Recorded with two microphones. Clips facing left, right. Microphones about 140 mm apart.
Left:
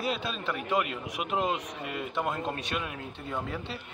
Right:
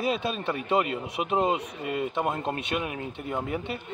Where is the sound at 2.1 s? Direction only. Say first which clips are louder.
Right 3 dB; 20° right (ahead or behind).